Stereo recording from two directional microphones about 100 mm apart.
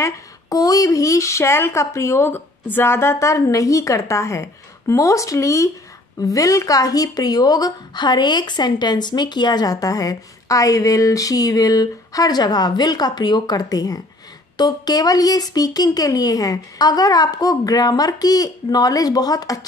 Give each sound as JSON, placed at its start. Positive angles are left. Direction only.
{"t": 0.0, "sound": "speech", "side_deg": 40}